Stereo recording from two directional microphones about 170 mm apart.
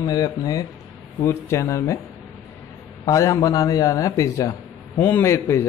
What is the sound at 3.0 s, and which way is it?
A man's voice, 20° left (ahead or behind).